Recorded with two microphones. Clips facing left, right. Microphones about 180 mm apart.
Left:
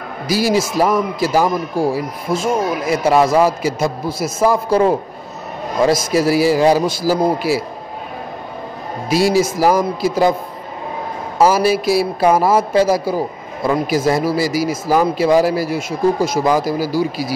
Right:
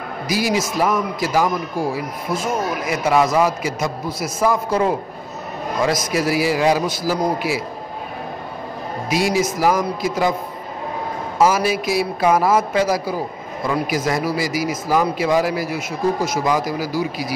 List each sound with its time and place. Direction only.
0.3 s a man's voice: 30° left (ahead or behind)
9.1 s a man's voice: 30° left (ahead or behind)
11.3 s a man's voice: 35° left (ahead or behind)